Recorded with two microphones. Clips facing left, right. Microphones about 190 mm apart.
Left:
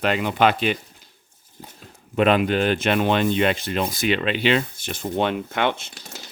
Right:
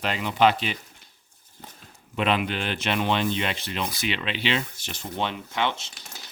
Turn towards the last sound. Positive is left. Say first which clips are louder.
# left 4 dB
turn(degrees=55)  # may be behind; listen again after turning